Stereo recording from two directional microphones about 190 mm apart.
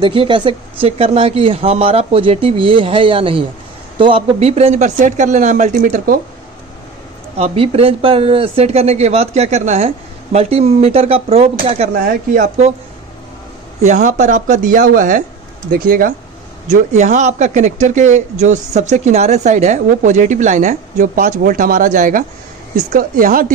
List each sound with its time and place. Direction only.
0.0 s speech: 25° right (ahead or behind); by 6.1 s 45° right (ahead or behind)
7.3 s speech: 30° right (ahead or behind)
13.8 s speech: 40° right (ahead or behind)